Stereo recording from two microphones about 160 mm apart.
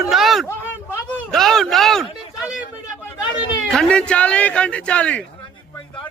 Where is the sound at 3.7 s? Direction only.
5° left (ahead or behind).